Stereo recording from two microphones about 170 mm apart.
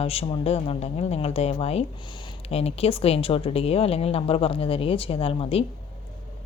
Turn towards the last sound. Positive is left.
turn(degrees=35)  # may be behind; listen again after turning